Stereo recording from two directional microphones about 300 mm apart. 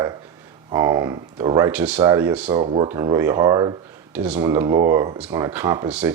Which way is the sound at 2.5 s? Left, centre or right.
Centre.